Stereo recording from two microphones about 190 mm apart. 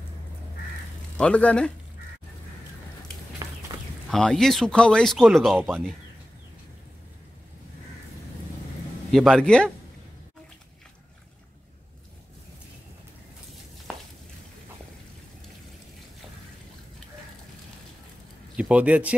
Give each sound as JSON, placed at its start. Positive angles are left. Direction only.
{"t": 1.1, "sound": "speech", "side_deg": 5}
{"t": 3.4, "sound": "a sound", "side_deg": -20}
{"t": 4.1, "sound": "speech", "side_deg": 5}
{"t": 9.1, "sound": "speech", "side_deg": 0}
{"t": 18.6, "sound": "speech", "side_deg": -5}